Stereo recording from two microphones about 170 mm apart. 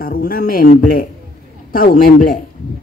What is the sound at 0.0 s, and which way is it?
A man's voice, 60° left (ahead or behind).